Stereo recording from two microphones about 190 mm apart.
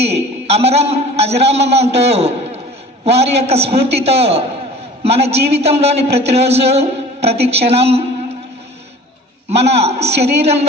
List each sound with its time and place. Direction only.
0.0 s a man's voice: 35° right (ahead or behind)
9.6 s a woman's voice: 35° right (ahead or behind)